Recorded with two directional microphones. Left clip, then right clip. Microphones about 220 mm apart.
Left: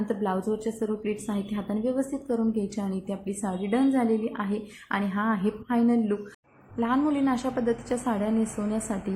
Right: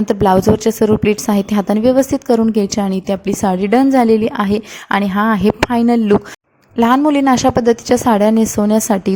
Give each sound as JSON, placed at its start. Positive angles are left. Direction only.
{"t": 0.1, "sound": "a woman's voice", "side_deg": -45}